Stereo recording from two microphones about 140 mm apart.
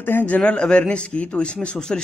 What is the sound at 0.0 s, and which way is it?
A man's voice, 15° left (ahead or behind).